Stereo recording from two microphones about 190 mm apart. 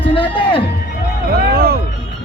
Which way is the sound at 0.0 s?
30° left (ahead or behind).